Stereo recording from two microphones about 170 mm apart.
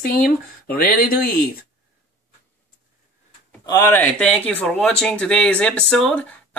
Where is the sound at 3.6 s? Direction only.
20° left (ahead or behind).